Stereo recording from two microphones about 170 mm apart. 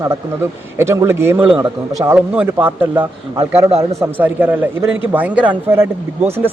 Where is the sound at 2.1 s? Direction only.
10° right (ahead or behind).